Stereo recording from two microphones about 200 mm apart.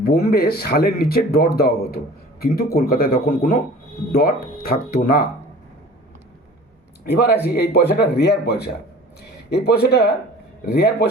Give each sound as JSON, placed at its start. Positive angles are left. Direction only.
{"t": 0.0, "sound": "speech", "side_deg": 50}
{"t": 7.0, "sound": "speech", "side_deg": 55}